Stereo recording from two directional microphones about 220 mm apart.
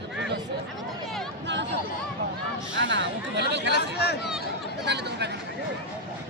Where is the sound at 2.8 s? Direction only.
55° right (ahead or behind).